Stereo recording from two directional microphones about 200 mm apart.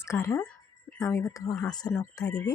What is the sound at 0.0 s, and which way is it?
Speech, 15° left (ahead or behind).